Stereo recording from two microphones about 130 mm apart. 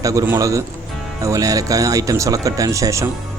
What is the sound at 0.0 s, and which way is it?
Speech, 25° right (ahead or behind).